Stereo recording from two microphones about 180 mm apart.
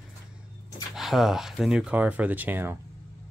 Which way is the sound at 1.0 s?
Centre (ahead or behind).